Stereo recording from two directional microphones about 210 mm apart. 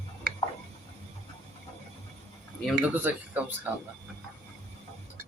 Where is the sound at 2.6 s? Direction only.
5° right (ahead or behind).